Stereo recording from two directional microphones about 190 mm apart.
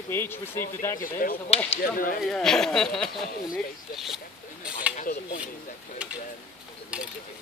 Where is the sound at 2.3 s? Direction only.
5° left (ahead or behind).